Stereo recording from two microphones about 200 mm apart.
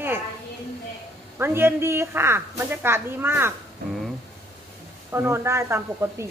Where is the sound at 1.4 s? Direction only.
10° right (ahead or behind).